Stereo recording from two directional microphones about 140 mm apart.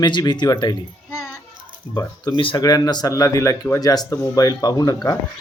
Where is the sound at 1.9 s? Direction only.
30° left (ahead or behind).